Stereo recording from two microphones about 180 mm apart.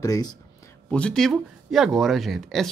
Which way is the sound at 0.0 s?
20° left (ahead or behind).